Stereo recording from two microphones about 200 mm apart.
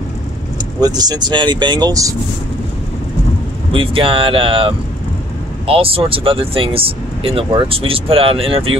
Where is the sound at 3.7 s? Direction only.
25° right (ahead or behind).